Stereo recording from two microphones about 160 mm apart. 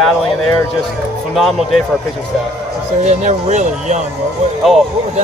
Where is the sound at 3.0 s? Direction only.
45° right (ahead or behind).